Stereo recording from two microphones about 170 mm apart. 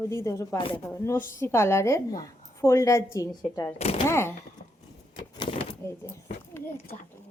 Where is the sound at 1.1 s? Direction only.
15° left (ahead or behind).